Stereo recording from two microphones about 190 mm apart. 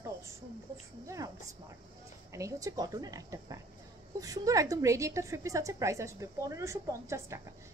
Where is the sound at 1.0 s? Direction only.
15° right (ahead or behind).